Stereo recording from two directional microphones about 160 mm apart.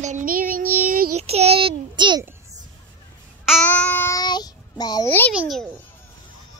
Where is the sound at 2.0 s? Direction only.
30° right (ahead or behind).